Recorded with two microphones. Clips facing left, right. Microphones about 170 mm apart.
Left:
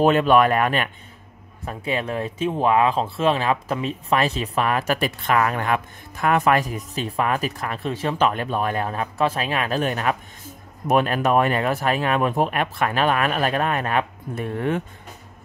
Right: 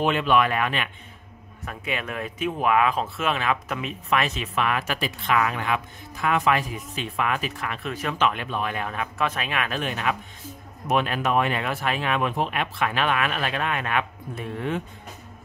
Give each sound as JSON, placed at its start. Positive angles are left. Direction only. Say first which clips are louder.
{"t": 0.0, "sound": "speech", "louder": "left 5 dB", "side_deg": 40}
{"t": 1.7, "sound": "speech", "louder": "left 5 dB", "side_deg": 30}
{"t": 14.4, "sound": "speech", "louder": "left 5 dB", "side_deg": 50}